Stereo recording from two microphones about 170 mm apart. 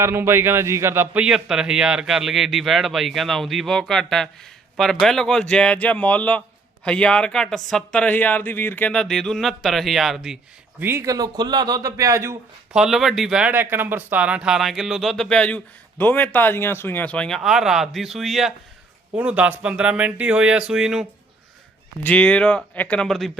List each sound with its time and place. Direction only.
0.0 s speech: 15° right (ahead or behind)
10.8 s speech: 15° right (ahead or behind)
12.7 s speech: centre (ahead or behind)
22.0 s speech: 10° left (ahead or behind)